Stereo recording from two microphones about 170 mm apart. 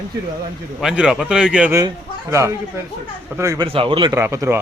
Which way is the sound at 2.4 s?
20° right (ahead or behind).